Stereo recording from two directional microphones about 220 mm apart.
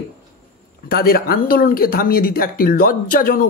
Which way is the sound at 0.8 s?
45° left (ahead or behind).